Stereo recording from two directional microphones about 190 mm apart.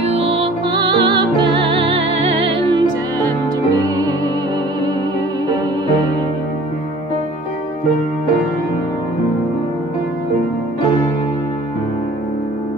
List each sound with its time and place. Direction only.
0.0 s music: 30° right (ahead or behind)
5.5 s music: 20° right (ahead or behind)